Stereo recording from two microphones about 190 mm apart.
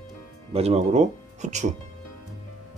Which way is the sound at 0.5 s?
35° right (ahead or behind).